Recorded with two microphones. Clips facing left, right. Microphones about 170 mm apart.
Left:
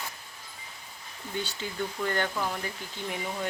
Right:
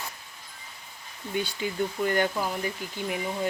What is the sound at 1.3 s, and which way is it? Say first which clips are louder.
Speech: right 5 dB; 15° right (ahead or behind).